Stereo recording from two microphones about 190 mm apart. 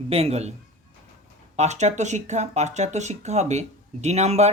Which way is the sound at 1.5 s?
35° right (ahead or behind).